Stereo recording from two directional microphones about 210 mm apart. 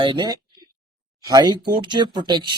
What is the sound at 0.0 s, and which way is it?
Speech, 20° right (ahead or behind).